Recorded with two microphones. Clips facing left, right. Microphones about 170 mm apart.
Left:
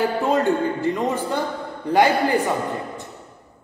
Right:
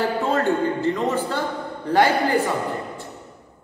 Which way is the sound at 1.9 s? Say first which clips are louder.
Left 1 dB; 15° left (ahead or behind).